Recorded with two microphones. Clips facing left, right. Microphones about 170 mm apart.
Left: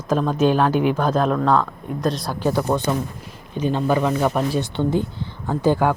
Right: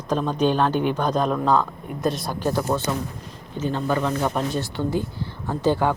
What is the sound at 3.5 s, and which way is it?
Speech, 15° left (ahead or behind).